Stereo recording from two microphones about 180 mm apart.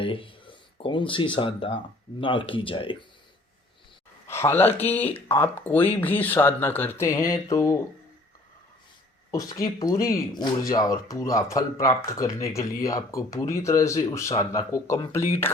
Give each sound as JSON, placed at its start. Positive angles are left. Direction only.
{"t": 0.0, "sound": "speech", "side_deg": 30}
{"t": 4.3, "sound": "speech", "side_deg": 15}
{"t": 9.3, "sound": "speech", "side_deg": 20}